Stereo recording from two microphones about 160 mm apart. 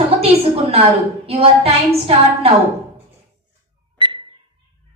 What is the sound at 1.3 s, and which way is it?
A woman's voice, 35° right (ahead or behind).